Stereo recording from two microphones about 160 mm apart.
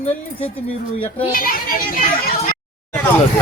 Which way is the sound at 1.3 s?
65° left (ahead or behind).